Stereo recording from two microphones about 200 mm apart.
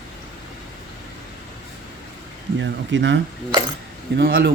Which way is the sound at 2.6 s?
65° right (ahead or behind).